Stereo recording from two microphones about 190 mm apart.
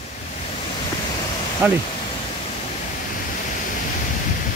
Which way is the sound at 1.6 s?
10° right (ahead or behind).